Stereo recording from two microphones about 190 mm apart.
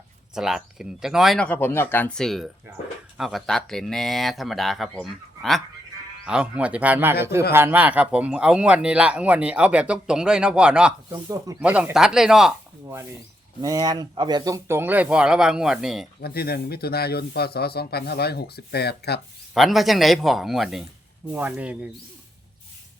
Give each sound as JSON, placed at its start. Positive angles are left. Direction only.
{"t": 0.3, "sound": "speech", "side_deg": -5}
{"t": 13.6, "sound": "speech", "side_deg": -20}
{"t": 16.2, "sound": "speech", "side_deg": 55}
{"t": 19.5, "sound": "speech", "side_deg": 0}